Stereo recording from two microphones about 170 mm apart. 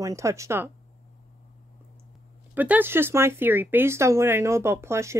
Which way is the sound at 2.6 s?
10° right (ahead or behind).